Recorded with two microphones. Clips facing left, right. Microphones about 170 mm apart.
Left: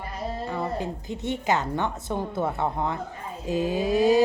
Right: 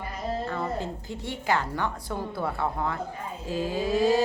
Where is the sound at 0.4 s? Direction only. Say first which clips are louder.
Left 1 dB; 15° left (ahead or behind).